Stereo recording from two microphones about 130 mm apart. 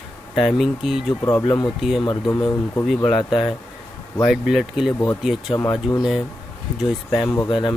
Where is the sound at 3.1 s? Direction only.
Centre (ahead or behind).